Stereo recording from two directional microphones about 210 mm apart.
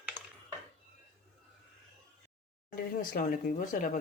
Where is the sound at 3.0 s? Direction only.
40° left (ahead or behind).